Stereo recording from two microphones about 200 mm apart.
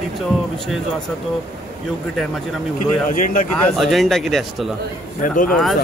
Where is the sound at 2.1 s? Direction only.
Centre (ahead or behind).